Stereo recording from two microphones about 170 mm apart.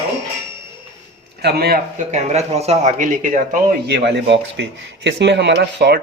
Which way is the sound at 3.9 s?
90° right.